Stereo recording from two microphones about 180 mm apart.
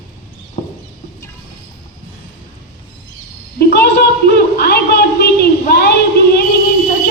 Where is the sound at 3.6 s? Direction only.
65° left (ahead or behind).